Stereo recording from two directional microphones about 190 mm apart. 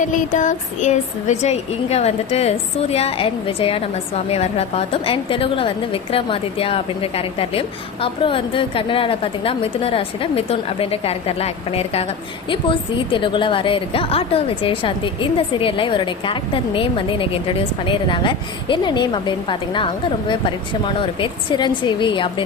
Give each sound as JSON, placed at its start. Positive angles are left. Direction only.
{"t": 0.0, "sound": "a woman's voice", "side_deg": 40}